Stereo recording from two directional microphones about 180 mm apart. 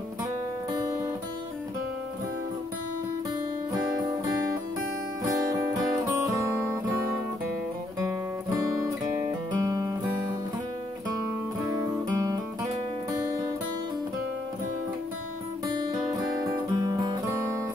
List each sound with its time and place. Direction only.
0.7 s music: 20° right (ahead or behind)
5.2 s music: 20° right (ahead or behind)
8.5 s music: 20° right (ahead or behind)
13.2 s music: 20° right (ahead or behind)
15.6 s music: 20° right (ahead or behind)